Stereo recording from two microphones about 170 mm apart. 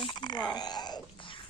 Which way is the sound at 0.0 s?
25° left (ahead or behind).